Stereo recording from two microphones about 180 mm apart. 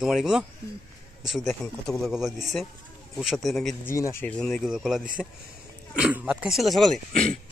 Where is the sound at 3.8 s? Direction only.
15° left (ahead or behind).